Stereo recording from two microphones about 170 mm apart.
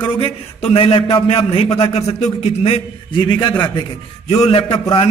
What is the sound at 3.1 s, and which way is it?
A man's voice, 25° left (ahead or behind).